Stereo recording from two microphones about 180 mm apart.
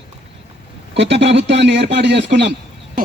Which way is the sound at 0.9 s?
85° right.